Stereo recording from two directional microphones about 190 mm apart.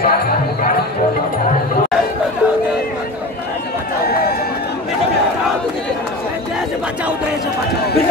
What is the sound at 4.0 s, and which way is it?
Run, 55° left (ahead or behind).